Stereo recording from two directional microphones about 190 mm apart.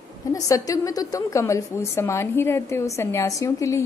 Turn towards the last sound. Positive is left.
turn(degrees=15)  # may be behind; listen again after turning